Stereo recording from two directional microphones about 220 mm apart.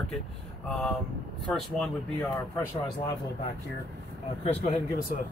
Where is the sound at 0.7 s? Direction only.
5° left (ahead or behind).